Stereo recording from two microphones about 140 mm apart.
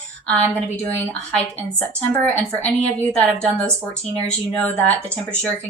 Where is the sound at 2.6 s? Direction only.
5° left (ahead or behind).